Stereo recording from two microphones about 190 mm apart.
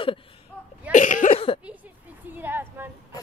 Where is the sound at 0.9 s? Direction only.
40° left (ahead or behind).